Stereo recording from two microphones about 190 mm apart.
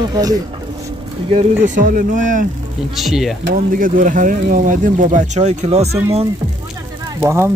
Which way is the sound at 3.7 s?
45° right (ahead or behind).